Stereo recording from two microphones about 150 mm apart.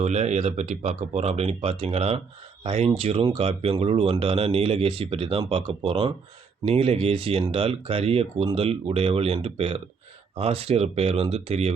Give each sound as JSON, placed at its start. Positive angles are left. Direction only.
{"t": 0.0, "sound": "speech", "side_deg": -45}